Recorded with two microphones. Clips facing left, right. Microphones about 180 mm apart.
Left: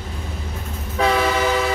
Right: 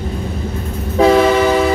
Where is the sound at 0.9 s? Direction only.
40° right (ahead or behind).